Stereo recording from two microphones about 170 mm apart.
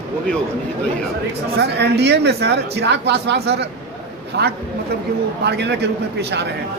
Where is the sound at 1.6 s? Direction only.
75° right (ahead or behind).